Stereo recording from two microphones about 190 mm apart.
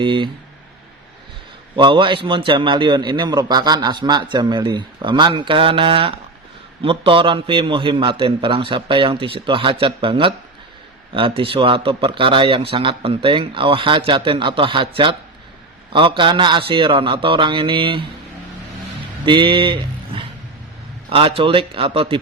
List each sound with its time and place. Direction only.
0.0 s speech: 25° right (ahead or behind)
1.7 s speech: 25° right (ahead or behind)
19.2 s speech: 25° right (ahead or behind)